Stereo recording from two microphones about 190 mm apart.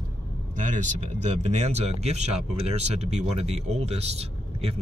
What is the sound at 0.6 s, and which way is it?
Speech, 40° right (ahead or behind).